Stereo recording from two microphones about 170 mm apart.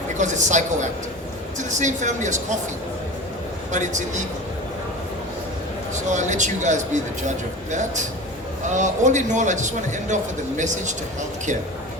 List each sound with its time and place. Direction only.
0.2 s speech: 45° right (ahead or behind)
3.7 s speech: 45° right (ahead or behind)
5.9 s speech: 45° right (ahead or behind)